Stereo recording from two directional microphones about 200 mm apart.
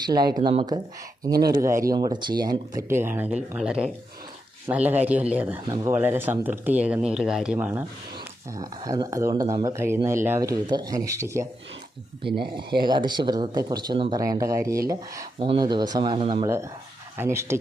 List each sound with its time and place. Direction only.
0.0 s speech: 20° right (ahead or behind)
8.5 s speech: 20° right (ahead or behind)
12.8 s speech: 20° right (ahead or behind)